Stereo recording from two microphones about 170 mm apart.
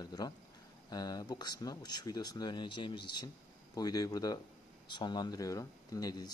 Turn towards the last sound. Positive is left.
turn(degrees=25)  # may be behind; listen again after turning